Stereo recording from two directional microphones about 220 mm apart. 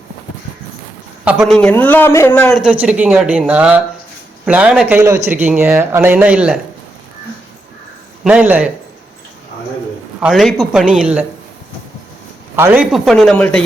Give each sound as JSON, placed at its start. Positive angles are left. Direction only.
{"t": 1.2, "sound": "a man's voice", "side_deg": -5}
{"t": 2.6, "sound": "speech", "side_deg": -5}
{"t": 8.2, "sound": "speech", "side_deg": -5}
{"t": 10.2, "sound": "speech", "side_deg": 0}
{"t": 12.5, "sound": "speech", "side_deg": -10}